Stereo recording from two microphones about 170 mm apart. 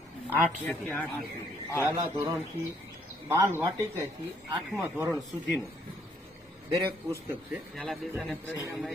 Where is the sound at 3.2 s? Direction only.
15° right (ahead or behind).